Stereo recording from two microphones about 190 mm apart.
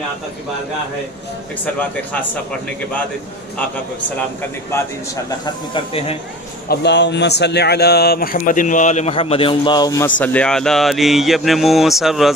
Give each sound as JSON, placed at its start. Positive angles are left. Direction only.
{"t": 5.4, "sound": "speech", "side_deg": 25}
{"t": 6.7, "sound": "speech", "side_deg": 65}
{"t": 10.0, "sound": "speech", "side_deg": 10}